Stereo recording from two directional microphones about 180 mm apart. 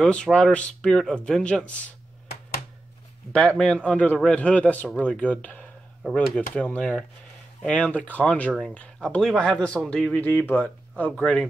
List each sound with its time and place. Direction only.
0.0 s a man's voice: 5° left (ahead or behind)
3.3 s a man's voice: 5° left (ahead or behind)